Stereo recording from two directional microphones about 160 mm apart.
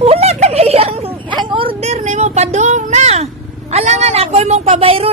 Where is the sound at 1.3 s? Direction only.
30° right (ahead or behind).